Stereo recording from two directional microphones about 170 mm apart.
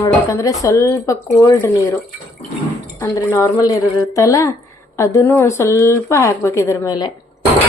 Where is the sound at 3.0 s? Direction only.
15° left (ahead or behind).